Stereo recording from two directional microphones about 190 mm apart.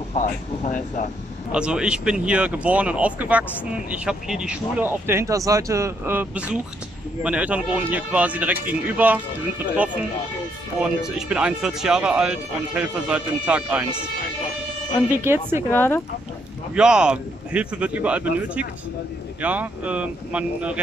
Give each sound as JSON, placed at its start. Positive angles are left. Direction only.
{"t": 0.1, "sound": "speech", "side_deg": 40}
{"t": 1.5, "sound": "speech", "side_deg": -5}
{"t": 10.8, "sound": "speech", "side_deg": -5}
{"t": 15.2, "sound": "speech", "side_deg": -10}
{"t": 15.7, "sound": "speech", "side_deg": 10}
{"t": 16.7, "sound": "speech", "side_deg": -5}